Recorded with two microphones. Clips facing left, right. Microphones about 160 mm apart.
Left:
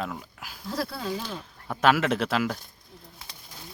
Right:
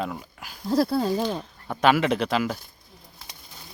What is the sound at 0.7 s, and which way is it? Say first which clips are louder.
Speech: right 9 dB; 35° right (ahead or behind).